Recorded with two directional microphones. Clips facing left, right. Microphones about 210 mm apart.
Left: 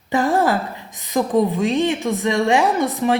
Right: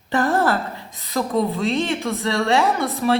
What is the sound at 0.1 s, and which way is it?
A woman's voice, 15° left (ahead or behind).